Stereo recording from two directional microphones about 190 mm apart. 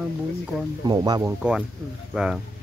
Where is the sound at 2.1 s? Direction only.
5° right (ahead or behind).